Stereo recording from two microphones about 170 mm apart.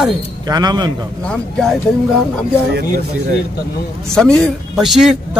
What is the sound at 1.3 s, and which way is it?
Speech, 5° left (ahead or behind).